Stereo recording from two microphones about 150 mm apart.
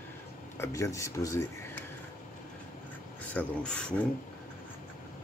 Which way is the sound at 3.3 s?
10° left (ahead or behind).